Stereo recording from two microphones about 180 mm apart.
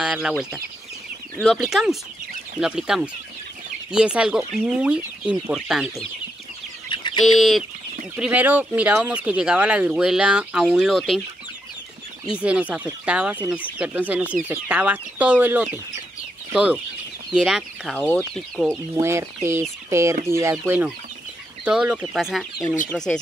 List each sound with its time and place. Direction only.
0.0 s speech: 5° right (ahead or behind)
6.9 s bird: 25° left (ahead or behind)
7.3 s speech: centre (ahead or behind)
12.4 s speech: 5° right (ahead or behind)
18.7 s speech: 15° right (ahead or behind); by 23.1 s 5° left (ahead or behind)